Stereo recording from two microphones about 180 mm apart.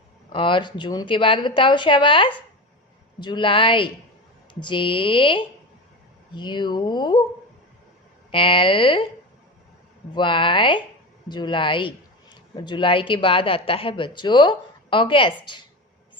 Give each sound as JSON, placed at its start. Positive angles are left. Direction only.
{"t": 0.3, "sound": "speech", "side_deg": 25}
{"t": 8.3, "sound": "speech", "side_deg": 30}
{"t": 10.2, "sound": "speech", "side_deg": 30}